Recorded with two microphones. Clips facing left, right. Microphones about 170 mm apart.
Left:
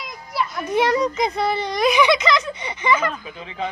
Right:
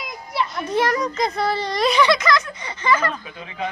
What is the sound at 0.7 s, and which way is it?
A child's voice, 15° left (ahead or behind).